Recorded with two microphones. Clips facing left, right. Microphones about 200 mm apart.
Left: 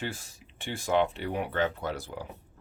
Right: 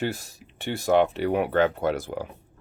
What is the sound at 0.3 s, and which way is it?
Speech, 70° right (ahead or behind).